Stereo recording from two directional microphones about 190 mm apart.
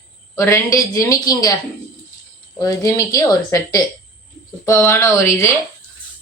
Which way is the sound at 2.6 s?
15° left (ahead or behind).